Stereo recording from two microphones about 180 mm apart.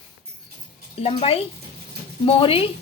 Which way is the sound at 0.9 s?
30° left (ahead or behind).